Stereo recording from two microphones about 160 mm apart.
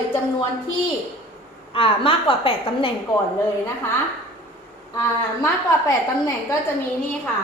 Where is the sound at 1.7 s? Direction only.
35° left (ahead or behind).